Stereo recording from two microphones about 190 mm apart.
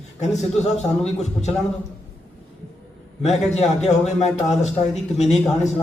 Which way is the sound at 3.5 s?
35° left (ahead or behind).